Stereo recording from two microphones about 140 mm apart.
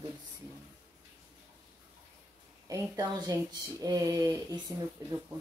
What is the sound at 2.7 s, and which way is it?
Speech, 25° right (ahead or behind).